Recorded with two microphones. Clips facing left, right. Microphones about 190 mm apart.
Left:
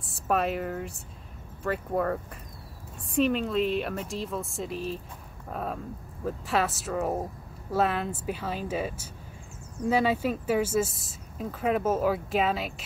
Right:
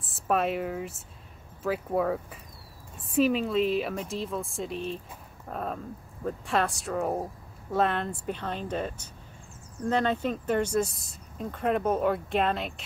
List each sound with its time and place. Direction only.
0.0 s speech: centre (ahead or behind)